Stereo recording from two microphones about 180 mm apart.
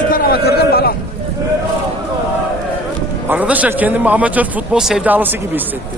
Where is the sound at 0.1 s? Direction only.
55° left (ahead or behind).